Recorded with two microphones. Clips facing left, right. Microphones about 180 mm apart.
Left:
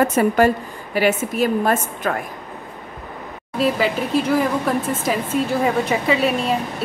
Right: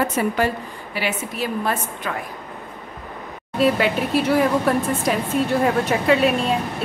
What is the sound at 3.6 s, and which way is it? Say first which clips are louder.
Speech: right 1 dB; centre (ahead or behind).